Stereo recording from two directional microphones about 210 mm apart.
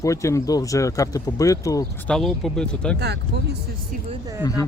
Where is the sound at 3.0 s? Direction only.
50° right (ahead or behind).